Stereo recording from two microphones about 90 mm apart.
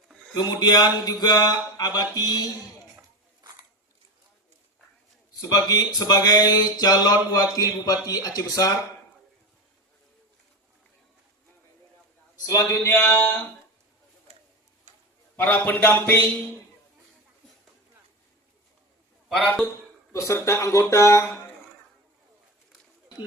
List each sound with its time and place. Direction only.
0.6 s speech: 50° left (ahead or behind)
5.3 s speech: 45° left (ahead or behind)
12.5 s a sound: 35° left (ahead or behind)
15.6 s a sound: 20° left (ahead or behind)
19.4 s a man's voice: 10° left (ahead or behind)
20.1 s speech: 35° left (ahead or behind)